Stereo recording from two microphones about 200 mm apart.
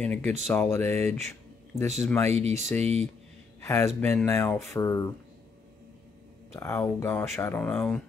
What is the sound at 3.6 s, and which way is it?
Speech, 15° left (ahead or behind).